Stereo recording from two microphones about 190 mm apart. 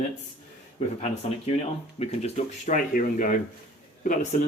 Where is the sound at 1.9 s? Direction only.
35° left (ahead or behind).